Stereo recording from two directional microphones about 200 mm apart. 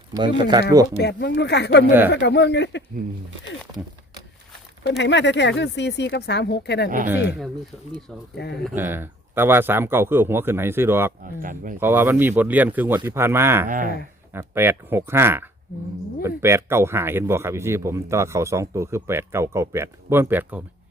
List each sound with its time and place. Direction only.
0.1 s speech: 25° right (ahead or behind)
0.9 s speech: 55° left (ahead or behind)
4.8 s speech: 65° left (ahead or behind)
8.4 s speech: 55° left (ahead or behind)
8.7 s speech: 10° right (ahead or behind)
11.2 s speech: 40° right (ahead or behind)
11.8 s speech: 10° right (ahead or behind)
13.7 s speech: 45° right (ahead or behind)
14.3 s speech: 10° right (ahead or behind)